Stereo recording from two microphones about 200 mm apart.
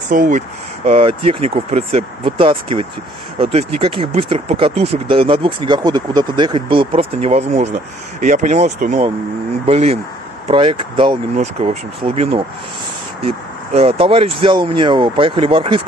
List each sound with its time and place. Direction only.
0.1 s speech: 40° right (ahead or behind)
0.8 s speech: 30° right (ahead or behind)